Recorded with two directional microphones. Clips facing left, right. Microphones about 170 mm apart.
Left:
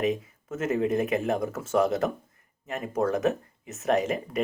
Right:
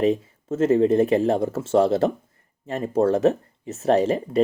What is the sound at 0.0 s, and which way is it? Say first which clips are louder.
Speech: right 6 dB; 30° right (ahead or behind).